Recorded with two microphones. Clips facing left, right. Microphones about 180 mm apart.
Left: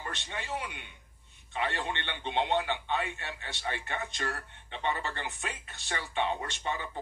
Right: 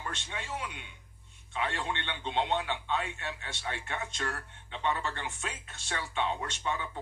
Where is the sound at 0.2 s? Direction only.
65° left (ahead or behind).